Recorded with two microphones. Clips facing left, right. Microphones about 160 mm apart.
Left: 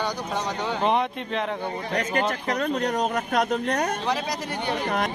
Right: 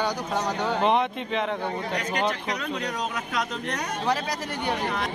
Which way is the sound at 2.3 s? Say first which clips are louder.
Left 4 dB; 50° left (ahead or behind).